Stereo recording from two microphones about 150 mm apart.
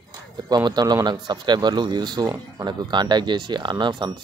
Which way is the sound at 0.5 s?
30° right (ahead or behind).